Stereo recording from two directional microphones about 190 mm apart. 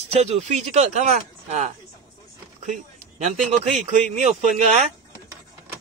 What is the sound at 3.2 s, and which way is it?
Speech, 40° right (ahead or behind).